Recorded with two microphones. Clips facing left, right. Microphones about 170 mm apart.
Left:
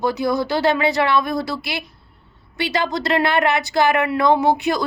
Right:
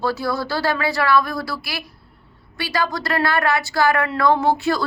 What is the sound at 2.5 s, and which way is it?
A woman's voice, 20° left (ahead or behind).